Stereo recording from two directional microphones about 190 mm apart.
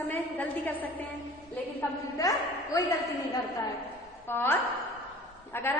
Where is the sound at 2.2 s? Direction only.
15° left (ahead or behind).